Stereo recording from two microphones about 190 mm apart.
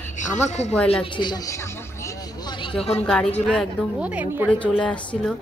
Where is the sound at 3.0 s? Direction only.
5° left (ahead or behind).